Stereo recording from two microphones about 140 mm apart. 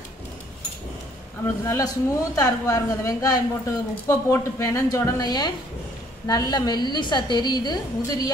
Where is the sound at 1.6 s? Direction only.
25° left (ahead or behind).